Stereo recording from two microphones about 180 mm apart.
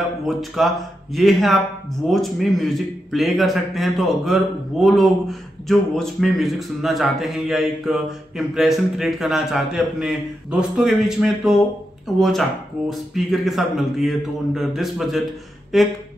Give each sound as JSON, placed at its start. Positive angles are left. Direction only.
{"t": 0.3, "sound": "a man's voice", "side_deg": 0}